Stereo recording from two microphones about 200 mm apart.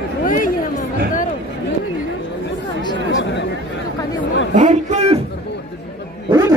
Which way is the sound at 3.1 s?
65° left (ahead or behind).